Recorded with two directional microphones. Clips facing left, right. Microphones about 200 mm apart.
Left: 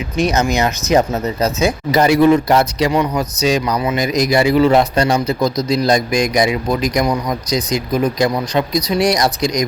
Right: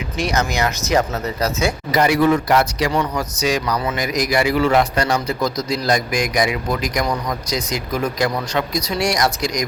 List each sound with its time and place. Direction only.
0.2 s a man's voice: 20° left (ahead or behind)